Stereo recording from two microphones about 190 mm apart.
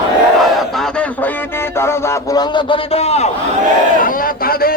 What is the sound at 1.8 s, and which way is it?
A man's voice, 15° left (ahead or behind).